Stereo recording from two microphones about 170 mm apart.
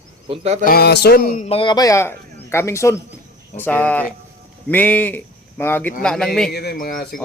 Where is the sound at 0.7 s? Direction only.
70° left (ahead or behind).